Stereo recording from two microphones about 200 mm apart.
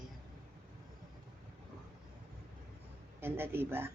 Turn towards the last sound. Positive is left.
turn(degrees=-10)  # may be behind; listen again after turning